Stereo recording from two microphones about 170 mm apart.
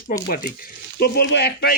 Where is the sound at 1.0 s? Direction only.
75° left (ahead or behind).